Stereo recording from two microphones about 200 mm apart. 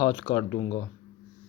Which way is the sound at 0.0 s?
20° left (ahead or behind).